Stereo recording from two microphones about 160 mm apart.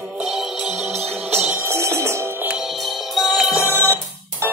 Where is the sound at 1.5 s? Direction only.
15° right (ahead or behind).